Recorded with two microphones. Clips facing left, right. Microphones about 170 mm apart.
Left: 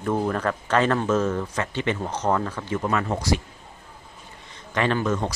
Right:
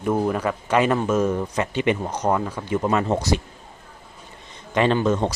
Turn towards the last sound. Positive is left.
turn(degrees=-20)  # may be behind; listen again after turning